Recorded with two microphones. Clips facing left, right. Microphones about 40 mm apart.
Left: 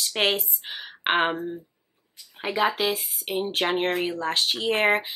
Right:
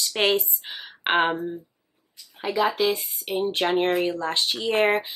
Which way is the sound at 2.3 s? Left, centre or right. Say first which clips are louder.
Right 1 dB; left.